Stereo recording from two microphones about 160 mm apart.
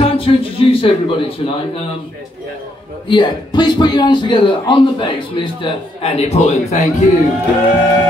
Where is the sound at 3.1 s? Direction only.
30° left (ahead or behind); by 6.9 s 45° left (ahead or behind).